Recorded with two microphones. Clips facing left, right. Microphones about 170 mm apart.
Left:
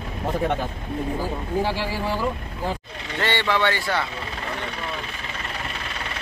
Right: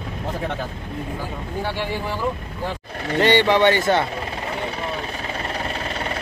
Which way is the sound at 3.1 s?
20° right (ahead or behind).